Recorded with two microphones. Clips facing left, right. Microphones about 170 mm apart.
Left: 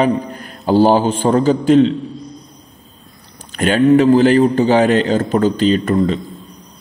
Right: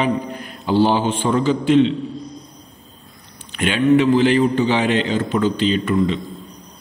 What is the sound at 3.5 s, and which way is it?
A man's voice, 40° left (ahead or behind).